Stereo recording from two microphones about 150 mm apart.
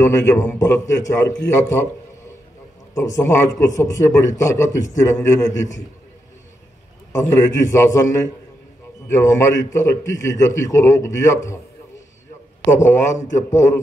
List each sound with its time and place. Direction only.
0.0 s a man's voice: 15° left (ahead or behind)
2.9 s a man's voice: 20° left (ahead or behind)
7.2 s a man's voice: 20° left (ahead or behind)
12.7 s a man's voice: 55° left (ahead or behind)